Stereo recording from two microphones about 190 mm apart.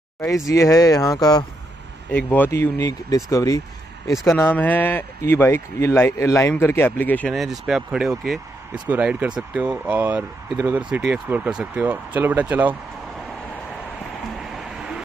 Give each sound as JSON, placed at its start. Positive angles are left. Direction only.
{"t": 0.5, "sound": "speech", "side_deg": 15}
{"t": 14.4, "sound": "vehicle", "side_deg": 0}